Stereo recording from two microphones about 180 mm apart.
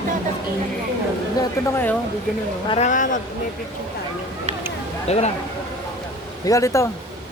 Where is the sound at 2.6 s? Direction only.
40° left (ahead or behind).